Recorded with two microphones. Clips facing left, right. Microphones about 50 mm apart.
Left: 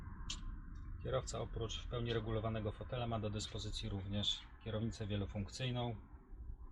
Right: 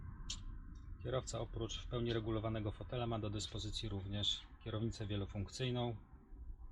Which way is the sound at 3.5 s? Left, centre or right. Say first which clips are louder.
Even; centre.